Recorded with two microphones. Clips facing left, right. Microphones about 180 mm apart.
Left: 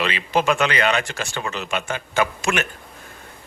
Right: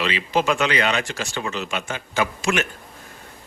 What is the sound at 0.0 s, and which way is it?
Speech, 55° left (ahead or behind).